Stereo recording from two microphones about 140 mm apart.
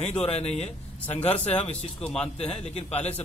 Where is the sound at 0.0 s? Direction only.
50° left (ahead or behind).